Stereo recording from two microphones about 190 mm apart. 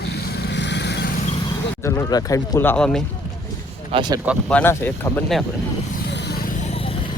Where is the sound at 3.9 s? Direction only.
25° right (ahead or behind).